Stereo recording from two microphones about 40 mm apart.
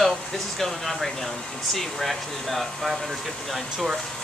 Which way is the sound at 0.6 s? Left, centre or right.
Centre.